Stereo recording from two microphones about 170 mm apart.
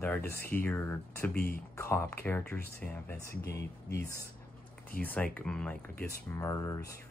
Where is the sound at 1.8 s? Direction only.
15° left (ahead or behind).